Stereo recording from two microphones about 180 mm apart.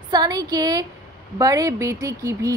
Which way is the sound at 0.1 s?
20° right (ahead or behind).